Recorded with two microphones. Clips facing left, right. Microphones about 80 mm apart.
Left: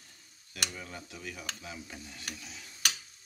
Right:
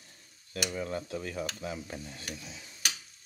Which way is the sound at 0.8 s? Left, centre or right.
Right.